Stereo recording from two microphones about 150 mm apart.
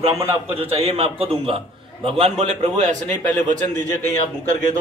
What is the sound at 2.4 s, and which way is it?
Speech, 50° right (ahead or behind).